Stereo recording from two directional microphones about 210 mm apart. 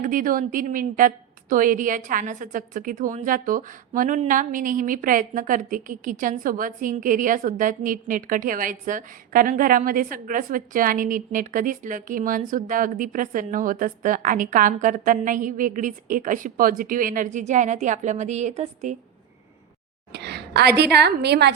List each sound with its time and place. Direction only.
0.0 s a woman's voice: 40° right (ahead or behind)
20.1 s a woman's voice: 50° right (ahead or behind)